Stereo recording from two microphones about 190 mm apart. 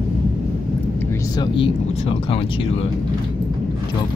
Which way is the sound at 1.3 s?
25° left (ahead or behind).